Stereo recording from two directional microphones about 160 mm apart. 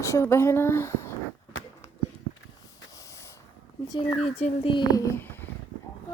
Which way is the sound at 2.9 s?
20° left (ahead or behind).